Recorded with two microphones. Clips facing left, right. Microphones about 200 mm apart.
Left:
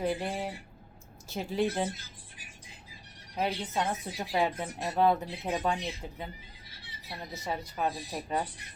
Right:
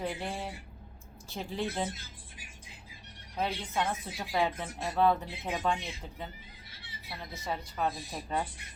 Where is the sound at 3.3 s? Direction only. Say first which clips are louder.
Left 1 dB; 15° left (ahead or behind).